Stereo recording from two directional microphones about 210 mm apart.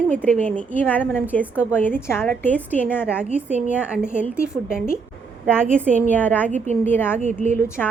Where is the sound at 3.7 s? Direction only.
5° right (ahead or behind); by 7.2 s 10° left (ahead or behind).